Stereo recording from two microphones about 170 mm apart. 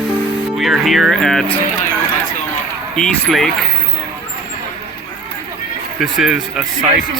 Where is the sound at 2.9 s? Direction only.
Centre (ahead or behind).